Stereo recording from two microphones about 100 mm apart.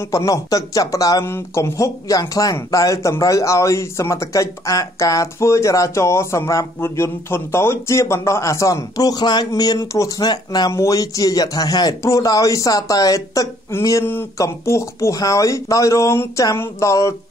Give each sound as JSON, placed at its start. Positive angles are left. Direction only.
{"t": 0.1, "sound": "a man's voice", "side_deg": 35}
{"t": 9.5, "sound": "a man's voice", "side_deg": 35}
{"t": 10.7, "sound": "a man's voice", "side_deg": 30}
{"t": 16.5, "sound": "a sound", "side_deg": 30}